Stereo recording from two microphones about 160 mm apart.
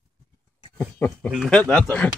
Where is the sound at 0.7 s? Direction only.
5° left (ahead or behind).